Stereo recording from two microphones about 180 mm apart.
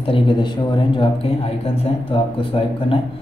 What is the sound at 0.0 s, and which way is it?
A man's voice, 30° left (ahead or behind).